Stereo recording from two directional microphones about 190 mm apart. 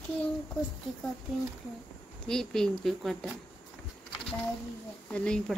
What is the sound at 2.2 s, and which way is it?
Speech, 5° left (ahead or behind).